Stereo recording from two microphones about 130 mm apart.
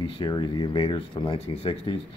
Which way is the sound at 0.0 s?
35° left (ahead or behind).